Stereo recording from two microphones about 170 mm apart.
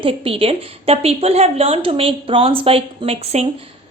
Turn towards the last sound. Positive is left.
turn(degrees=-40)  # may be behind; listen again after turning